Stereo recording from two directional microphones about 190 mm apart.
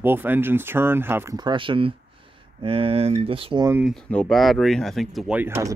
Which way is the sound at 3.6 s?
10° right (ahead or behind).